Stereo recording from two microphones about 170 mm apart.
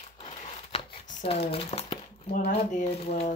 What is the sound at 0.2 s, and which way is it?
Crumpling, 40° left (ahead or behind).